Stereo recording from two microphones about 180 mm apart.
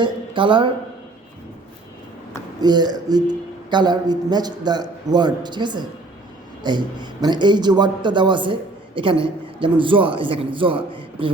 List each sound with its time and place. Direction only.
0.0 s speech: 30° right (ahead or behind)
2.6 s a man's voice: 25° right (ahead or behind)